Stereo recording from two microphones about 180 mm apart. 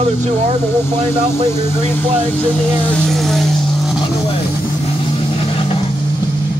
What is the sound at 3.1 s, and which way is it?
Vehicle, centre (ahead or behind).